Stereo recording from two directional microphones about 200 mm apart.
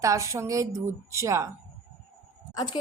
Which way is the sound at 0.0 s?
15° right (ahead or behind).